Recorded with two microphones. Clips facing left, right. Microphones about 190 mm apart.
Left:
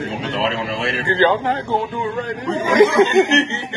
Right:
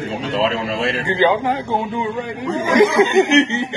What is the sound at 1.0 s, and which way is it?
A man's voice, 10° right (ahead or behind).